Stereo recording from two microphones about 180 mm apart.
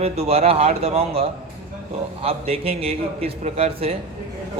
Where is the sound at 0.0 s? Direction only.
35° right (ahead or behind).